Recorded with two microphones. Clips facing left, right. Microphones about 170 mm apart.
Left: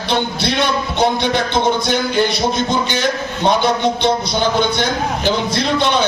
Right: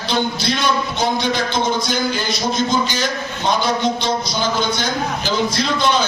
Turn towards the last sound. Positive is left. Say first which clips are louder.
# left 2 dB
turn(degrees=60)  # may be behind; listen again after turning